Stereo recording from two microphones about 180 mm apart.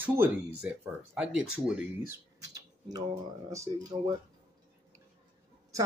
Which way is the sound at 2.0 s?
20° right (ahead or behind).